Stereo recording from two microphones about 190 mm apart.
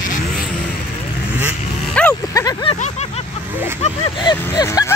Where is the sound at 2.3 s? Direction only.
20° left (ahead or behind).